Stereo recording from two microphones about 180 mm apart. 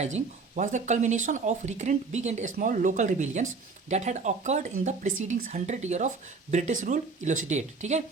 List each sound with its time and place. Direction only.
0.0 s speech: 40° right (ahead or behind)